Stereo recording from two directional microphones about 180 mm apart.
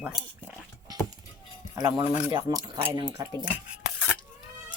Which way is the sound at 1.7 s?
20° right (ahead or behind).